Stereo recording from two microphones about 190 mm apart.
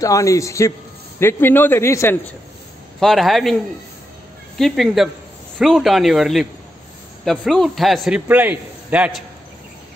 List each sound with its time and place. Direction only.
0.0 s a man's voice: 15° left (ahead or behind)
3.0 s a man's voice: centre (ahead or behind)
4.6 s a man's voice: centre (ahead or behind)